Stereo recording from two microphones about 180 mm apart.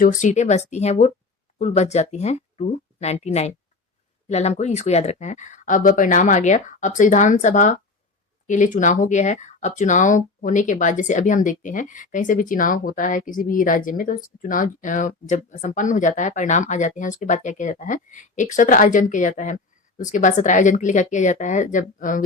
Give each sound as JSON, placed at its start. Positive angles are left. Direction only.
{"t": 0.0, "sound": "speech", "side_deg": 45}